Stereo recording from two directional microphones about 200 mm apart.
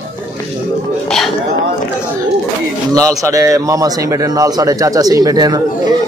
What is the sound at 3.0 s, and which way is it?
A man's voice, 15° right (ahead or behind).